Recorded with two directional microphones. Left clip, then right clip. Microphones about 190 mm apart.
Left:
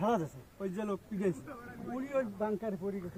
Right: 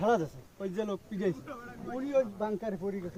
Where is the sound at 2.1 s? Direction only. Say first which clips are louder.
Right 4 dB; centre (ahead or behind).